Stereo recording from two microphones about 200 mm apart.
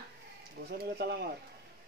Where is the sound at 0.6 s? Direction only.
55° right (ahead or behind).